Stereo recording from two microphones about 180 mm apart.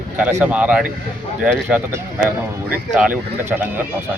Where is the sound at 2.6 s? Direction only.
10° right (ahead or behind).